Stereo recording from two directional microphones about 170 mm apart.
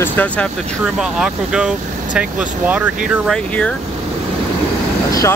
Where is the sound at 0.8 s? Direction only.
5° right (ahead or behind).